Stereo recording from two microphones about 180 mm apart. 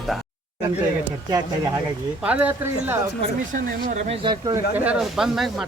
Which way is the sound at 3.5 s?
40° right (ahead or behind).